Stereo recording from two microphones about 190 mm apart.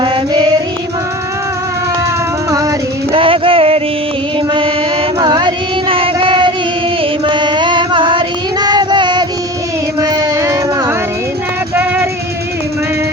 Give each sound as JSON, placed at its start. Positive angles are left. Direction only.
{"t": 3.1, "sound": "music", "side_deg": -30}
{"t": 5.2, "sound": "child singing", "side_deg": -25}
{"t": 7.3, "sound": "music", "side_deg": -25}
{"t": 8.6, "sound": "child singing", "side_deg": -20}
{"t": 10.0, "sound": "music", "side_deg": -15}